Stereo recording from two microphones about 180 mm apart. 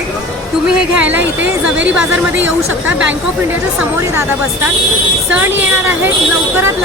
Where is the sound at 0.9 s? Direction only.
10° right (ahead or behind).